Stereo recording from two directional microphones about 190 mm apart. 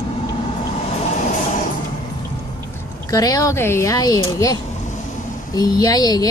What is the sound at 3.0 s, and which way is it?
Speech, 20° left (ahead or behind).